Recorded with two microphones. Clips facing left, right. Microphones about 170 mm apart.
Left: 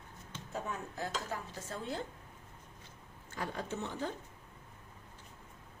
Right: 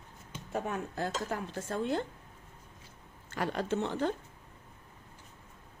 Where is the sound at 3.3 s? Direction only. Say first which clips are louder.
Right 7 dB; 80° right.